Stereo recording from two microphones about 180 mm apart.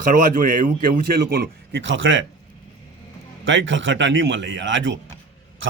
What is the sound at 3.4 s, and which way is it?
A man's voice, 90° right.